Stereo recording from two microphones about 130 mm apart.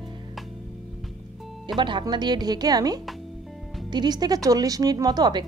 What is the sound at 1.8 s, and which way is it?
A woman's voice, 40° right (ahead or behind).